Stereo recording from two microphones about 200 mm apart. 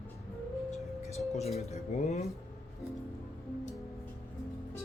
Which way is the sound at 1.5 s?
30° left (ahead or behind).